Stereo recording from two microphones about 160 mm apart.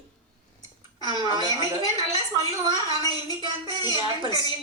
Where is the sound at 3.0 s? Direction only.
25° left (ahead or behind).